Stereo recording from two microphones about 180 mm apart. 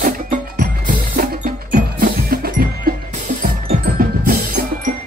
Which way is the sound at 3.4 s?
50° right (ahead or behind).